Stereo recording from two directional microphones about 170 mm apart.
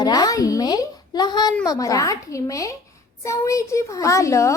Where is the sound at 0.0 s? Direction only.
20° left (ahead or behind).